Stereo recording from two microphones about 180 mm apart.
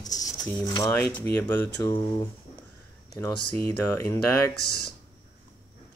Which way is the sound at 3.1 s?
20° left (ahead or behind).